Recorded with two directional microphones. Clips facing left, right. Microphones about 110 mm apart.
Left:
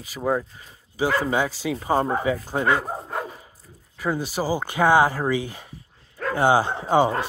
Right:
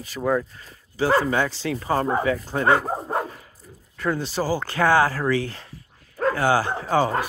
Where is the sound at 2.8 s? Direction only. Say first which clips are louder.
Right 4 dB; 30° right (ahead or behind).